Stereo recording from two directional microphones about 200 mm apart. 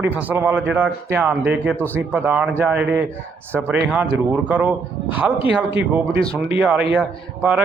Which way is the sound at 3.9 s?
10° right (ahead or behind).